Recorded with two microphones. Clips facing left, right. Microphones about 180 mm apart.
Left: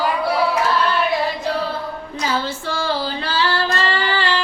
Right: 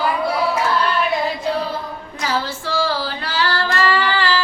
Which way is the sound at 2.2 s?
25° left (ahead or behind).